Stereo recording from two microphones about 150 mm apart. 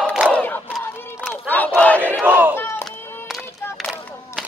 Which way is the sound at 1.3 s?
10° left (ahead or behind).